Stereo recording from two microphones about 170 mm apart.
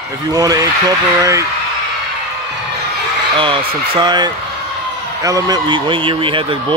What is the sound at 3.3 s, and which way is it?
Speech, 30° right (ahead or behind).